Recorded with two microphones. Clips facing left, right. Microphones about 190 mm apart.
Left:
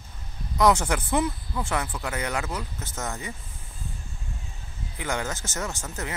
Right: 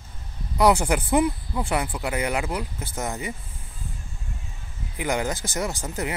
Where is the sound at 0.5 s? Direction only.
10° right (ahead or behind).